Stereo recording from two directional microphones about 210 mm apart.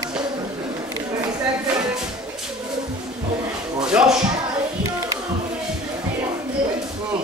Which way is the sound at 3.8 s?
5° right (ahead or behind).